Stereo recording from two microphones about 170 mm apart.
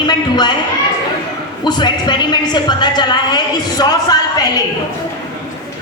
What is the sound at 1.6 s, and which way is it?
Speech, 25° left (ahead or behind).